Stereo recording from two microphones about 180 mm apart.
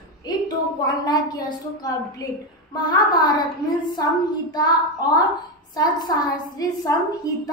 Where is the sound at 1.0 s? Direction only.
20° left (ahead or behind).